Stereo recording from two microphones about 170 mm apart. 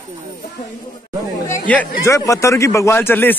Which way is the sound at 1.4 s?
10° left (ahead or behind).